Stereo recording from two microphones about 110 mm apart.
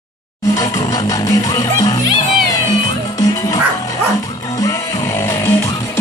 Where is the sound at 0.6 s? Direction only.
30° left (ahead or behind).